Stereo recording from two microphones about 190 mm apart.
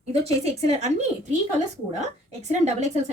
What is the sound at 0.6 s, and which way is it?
A woman's voice, 35° right (ahead or behind).